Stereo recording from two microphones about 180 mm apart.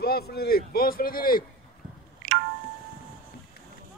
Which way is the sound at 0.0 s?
60° left (ahead or behind).